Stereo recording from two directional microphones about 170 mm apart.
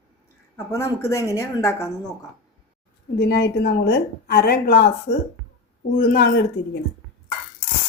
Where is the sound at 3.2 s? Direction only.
75° left (ahead or behind).